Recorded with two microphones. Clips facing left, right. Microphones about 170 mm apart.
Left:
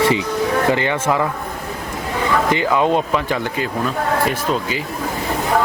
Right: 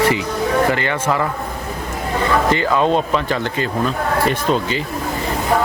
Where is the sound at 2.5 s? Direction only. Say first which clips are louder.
Left 1 dB; 15° left (ahead or behind).